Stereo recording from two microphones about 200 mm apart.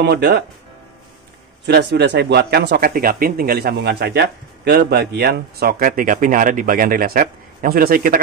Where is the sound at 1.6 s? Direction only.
55° right (ahead or behind).